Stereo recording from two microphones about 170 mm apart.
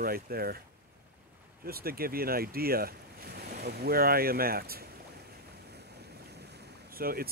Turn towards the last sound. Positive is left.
turn(degrees=-60)  # may be behind; listen again after turning